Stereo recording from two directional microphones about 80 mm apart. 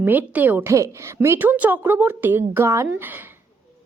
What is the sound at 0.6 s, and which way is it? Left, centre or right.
A woman's voice, right.